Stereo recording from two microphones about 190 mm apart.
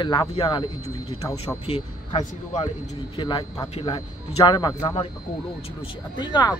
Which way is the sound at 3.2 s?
25° left (ahead or behind).